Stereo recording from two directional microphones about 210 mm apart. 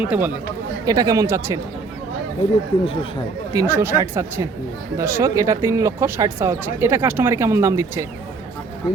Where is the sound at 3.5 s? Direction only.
10° right (ahead or behind).